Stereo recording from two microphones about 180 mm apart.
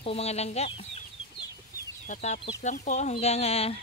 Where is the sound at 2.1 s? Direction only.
40° left (ahead or behind).